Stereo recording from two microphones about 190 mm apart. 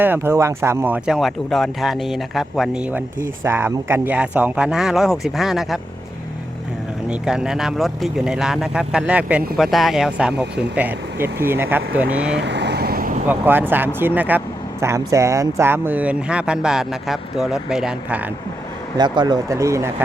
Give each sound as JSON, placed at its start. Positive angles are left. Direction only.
{"t": 0.0, "sound": "speech", "side_deg": -10}
{"t": 7.1, "sound": "speech", "side_deg": -5}
{"t": 12.4, "sound": "vehicle", "side_deg": -65}
{"t": 13.2, "sound": "speech", "side_deg": -10}
{"t": 18.9, "sound": "speech", "side_deg": -25}